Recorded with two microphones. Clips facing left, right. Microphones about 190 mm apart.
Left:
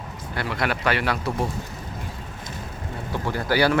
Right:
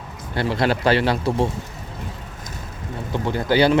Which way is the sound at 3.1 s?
20° right (ahead or behind).